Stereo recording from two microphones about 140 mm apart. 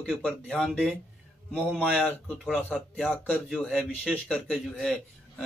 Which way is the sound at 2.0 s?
10° left (ahead or behind).